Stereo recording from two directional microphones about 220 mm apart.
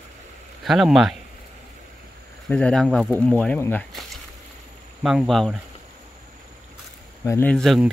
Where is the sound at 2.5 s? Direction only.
5° left (ahead or behind).